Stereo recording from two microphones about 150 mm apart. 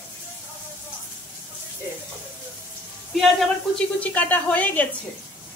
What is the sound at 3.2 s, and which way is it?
A woman's voice, 5° left (ahead or behind).